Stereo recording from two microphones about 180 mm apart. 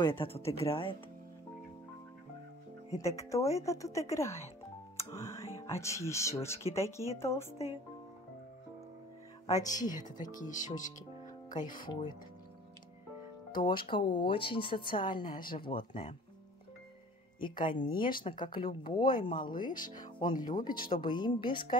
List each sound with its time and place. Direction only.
0.0 s speech: 30° left (ahead or behind)
3.0 s speech: 15° left (ahead or behind)
9.5 s speech: 20° left (ahead or behind)
10.3 s speech: 45° left (ahead or behind)
11.9 s speech: 25° left (ahead or behind)
13.6 s speech: 25° left (ahead or behind)
17.4 s speech: 25° left (ahead or behind)